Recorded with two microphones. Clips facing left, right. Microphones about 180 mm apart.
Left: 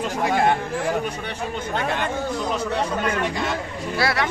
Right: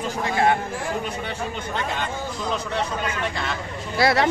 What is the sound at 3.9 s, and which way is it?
Speech, 25° right (ahead or behind).